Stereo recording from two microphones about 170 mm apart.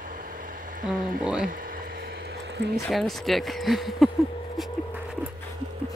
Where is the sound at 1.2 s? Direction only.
5° right (ahead or behind).